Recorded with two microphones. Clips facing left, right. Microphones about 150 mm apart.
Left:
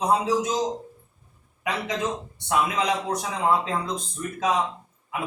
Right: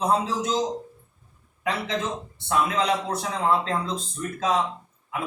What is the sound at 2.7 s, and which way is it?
A man's voice, 15° left (ahead or behind).